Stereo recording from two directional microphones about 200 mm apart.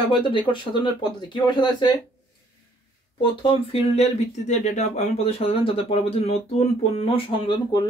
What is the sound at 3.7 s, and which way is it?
Speech, 30° left (ahead or behind).